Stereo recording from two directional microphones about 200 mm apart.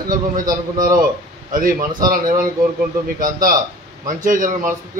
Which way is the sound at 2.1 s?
45° right (ahead or behind).